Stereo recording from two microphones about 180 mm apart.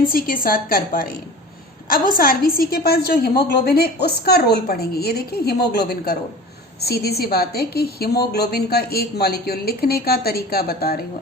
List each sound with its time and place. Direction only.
0.0 s a woman's voice: 55° left (ahead or behind)